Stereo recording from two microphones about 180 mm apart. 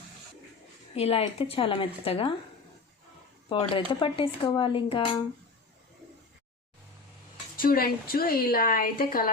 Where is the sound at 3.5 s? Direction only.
30° left (ahead or behind).